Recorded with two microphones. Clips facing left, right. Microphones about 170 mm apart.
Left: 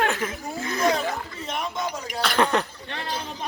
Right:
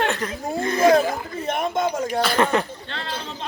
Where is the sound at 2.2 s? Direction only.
5° right (ahead or behind).